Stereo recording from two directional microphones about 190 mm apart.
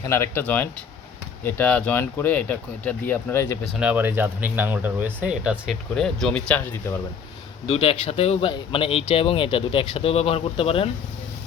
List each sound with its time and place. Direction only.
0.0 s speech: 15° left (ahead or behind)
3.6 s speech: 5° right (ahead or behind)
7.7 s speech: 30° left (ahead or behind)